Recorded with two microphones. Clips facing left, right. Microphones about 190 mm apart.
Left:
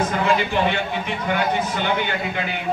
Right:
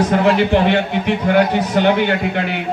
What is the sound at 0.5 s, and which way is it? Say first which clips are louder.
A man's voice: right 7 dB; 70° right (ahead or behind).